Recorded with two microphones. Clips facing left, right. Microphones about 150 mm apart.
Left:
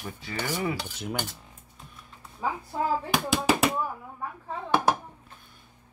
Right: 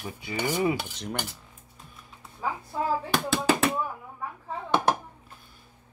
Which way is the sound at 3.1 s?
15° left (ahead or behind).